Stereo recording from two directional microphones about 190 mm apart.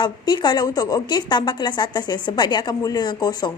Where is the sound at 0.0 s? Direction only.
25° left (ahead or behind).